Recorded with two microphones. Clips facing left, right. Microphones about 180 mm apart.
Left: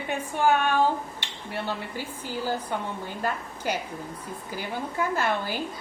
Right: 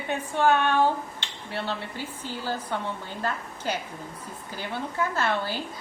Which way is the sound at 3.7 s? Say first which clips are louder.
Left 1 dB; 10° left (ahead or behind).